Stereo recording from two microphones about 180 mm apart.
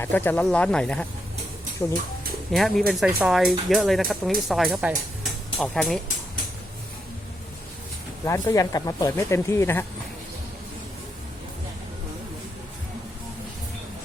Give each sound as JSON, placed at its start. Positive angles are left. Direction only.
{"t": 0.0, "sound": "speech", "side_deg": 10}
{"t": 8.2, "sound": "speech", "side_deg": 15}